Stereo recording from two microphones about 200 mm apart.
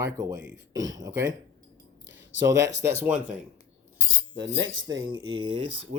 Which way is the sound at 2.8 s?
10° right (ahead or behind).